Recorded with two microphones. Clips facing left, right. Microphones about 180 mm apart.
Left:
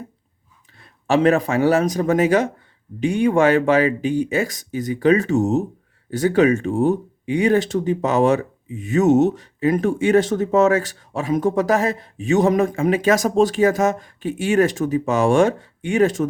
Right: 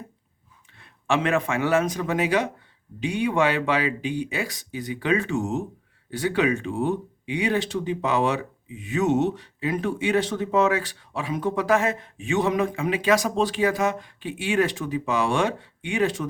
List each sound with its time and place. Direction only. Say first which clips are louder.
0.8 s a man's voice: left 7 dB; 40° left (ahead or behind)